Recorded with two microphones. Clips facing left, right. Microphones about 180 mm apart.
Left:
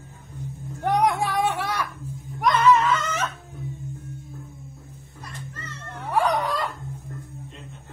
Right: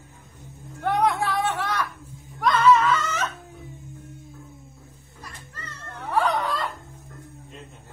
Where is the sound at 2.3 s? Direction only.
20° left (ahead or behind).